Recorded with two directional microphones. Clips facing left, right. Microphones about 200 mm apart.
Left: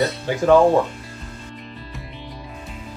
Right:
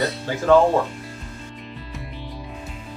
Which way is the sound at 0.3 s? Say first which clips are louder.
Left 3 dB; 15° left (ahead or behind).